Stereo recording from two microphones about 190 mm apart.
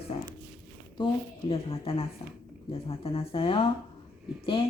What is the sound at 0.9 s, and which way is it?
Speech, 25° left (ahead or behind).